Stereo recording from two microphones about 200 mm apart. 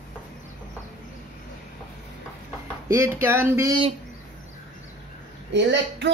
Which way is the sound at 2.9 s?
15° right (ahead or behind).